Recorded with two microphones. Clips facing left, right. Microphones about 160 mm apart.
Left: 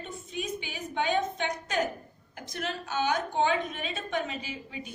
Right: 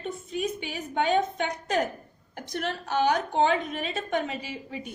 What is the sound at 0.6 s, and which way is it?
Speech, 35° right (ahead or behind).